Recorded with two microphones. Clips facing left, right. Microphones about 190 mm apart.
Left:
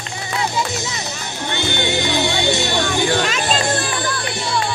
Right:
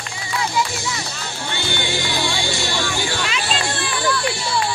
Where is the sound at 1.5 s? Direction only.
20° left (ahead or behind).